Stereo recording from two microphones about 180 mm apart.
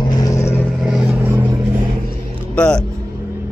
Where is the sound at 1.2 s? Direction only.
15° right (ahead or behind).